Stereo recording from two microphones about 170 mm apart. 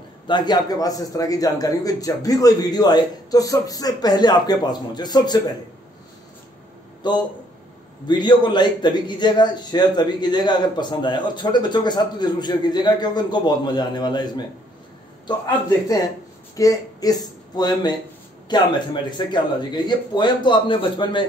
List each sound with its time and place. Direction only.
0.3 s a man's voice: 25° left (ahead or behind)
7.0 s a man's voice: 25° left (ahead or behind)
16.5 s a man's voice: 20° left (ahead or behind)